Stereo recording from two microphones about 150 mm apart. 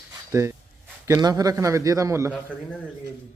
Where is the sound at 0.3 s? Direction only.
20° right (ahead or behind).